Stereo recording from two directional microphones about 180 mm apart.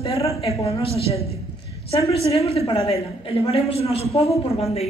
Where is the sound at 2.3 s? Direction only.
35° left (ahead or behind).